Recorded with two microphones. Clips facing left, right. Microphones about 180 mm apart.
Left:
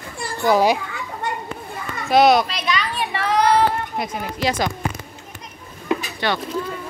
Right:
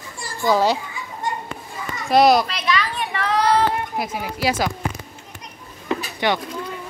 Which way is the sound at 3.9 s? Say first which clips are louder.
Even; 5° right (ahead or behind).